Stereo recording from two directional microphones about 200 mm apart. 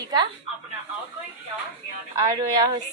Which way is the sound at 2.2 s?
20° right (ahead or behind).